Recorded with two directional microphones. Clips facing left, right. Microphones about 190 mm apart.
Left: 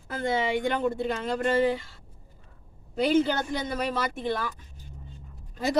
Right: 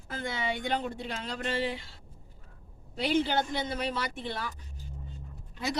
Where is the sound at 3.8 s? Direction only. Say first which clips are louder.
Left 5 dB; 45° left (ahead or behind).